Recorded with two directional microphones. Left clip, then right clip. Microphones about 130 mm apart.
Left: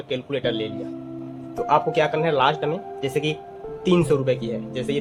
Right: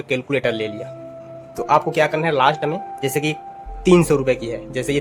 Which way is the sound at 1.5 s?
30° right (ahead or behind).